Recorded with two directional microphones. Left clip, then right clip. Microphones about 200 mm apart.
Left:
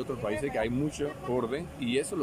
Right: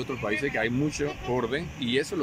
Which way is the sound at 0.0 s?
10° left (ahead or behind).